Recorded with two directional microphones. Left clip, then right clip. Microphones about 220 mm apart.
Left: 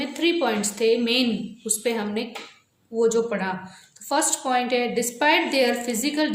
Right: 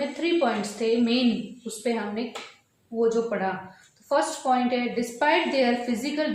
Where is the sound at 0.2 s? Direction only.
45° left (ahead or behind).